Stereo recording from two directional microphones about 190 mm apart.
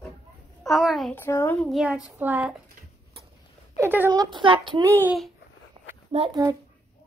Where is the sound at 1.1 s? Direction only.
10° left (ahead or behind).